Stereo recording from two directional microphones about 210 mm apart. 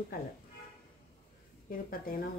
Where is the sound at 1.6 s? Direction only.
40° left (ahead or behind).